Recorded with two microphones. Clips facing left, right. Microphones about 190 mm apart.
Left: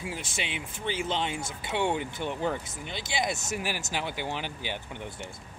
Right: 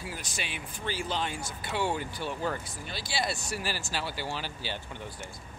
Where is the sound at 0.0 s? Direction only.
25° left (ahead or behind).